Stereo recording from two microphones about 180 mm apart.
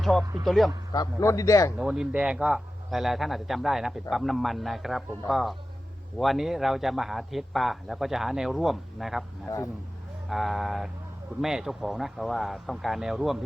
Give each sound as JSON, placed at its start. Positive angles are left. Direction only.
{"t": 0.0, "sound": "a man's voice", "side_deg": 0}
{"t": 0.9, "sound": "a man's voice", "side_deg": 20}
{"t": 1.8, "sound": "a man's voice", "side_deg": -5}
{"t": 10.2, "sound": "a man's voice", "side_deg": 0}